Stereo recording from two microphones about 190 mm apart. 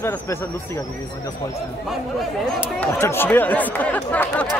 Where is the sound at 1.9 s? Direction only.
Centre (ahead or behind).